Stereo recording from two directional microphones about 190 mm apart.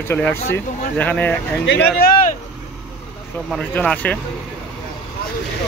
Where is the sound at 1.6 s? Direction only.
60° left (ahead or behind).